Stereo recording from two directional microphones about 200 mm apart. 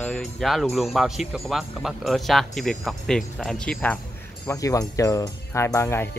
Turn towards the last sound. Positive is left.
turn(degrees=10)  # may be behind; listen again after turning